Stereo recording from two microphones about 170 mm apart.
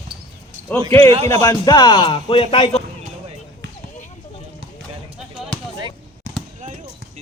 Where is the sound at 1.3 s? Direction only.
20° left (ahead or behind).